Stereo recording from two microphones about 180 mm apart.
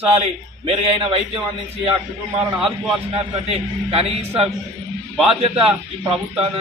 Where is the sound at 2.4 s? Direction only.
30° right (ahead or behind).